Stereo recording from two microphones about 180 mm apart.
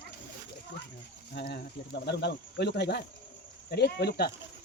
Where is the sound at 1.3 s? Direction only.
60° left (ahead or behind).